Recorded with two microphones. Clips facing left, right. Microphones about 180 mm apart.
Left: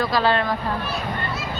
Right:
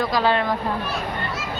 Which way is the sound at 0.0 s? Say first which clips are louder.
Even; 15° right (ahead or behind).